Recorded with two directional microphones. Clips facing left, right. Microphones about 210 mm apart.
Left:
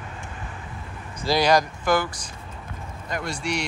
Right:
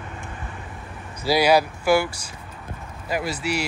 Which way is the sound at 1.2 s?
10° right (ahead or behind).